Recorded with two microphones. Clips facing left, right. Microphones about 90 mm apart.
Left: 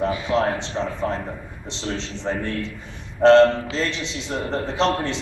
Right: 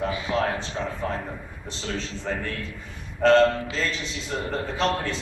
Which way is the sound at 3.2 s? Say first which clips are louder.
Left 5 dB; 25° left (ahead or behind).